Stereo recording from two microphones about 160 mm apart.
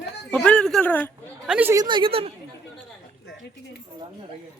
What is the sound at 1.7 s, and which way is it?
Speech, 30° right (ahead or behind).